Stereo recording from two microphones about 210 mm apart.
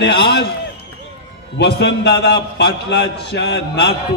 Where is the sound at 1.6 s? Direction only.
55° left (ahead or behind).